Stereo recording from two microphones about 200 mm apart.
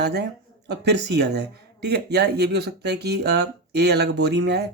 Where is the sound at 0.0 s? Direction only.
55° right (ahead or behind).